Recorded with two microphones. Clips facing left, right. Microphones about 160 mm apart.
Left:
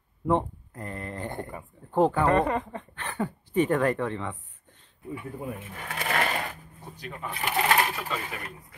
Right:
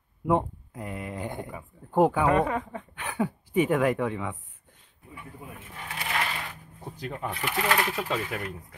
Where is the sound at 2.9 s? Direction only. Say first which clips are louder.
Right 3 dB; 10° right (ahead or behind).